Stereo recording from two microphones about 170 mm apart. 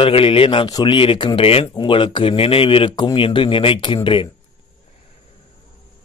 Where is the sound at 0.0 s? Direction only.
30° left (ahead or behind).